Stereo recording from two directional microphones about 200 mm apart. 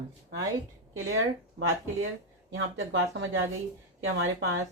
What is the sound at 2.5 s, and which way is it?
Speech, 80° right.